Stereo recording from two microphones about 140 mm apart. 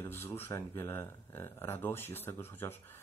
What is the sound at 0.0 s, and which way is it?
Speech, 20° left (ahead or behind).